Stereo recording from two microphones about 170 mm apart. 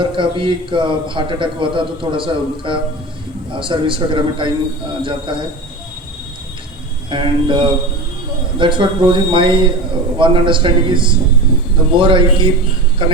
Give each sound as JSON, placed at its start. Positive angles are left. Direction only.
{"t": 0.0, "sound": "a man's voice", "side_deg": -30}
{"t": 7.1, "sound": "a man's voice", "side_deg": -30}